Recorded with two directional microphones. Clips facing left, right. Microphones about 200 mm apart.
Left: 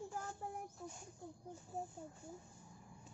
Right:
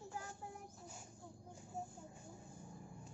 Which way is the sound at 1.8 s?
35° left (ahead or behind).